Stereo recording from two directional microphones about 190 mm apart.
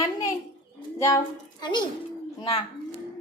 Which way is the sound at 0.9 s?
15° left (ahead or behind).